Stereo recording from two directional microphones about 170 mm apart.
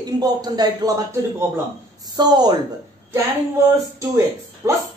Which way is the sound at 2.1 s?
25° right (ahead or behind).